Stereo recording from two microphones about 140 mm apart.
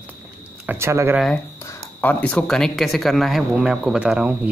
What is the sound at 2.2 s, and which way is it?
Speech, 5° left (ahead or behind).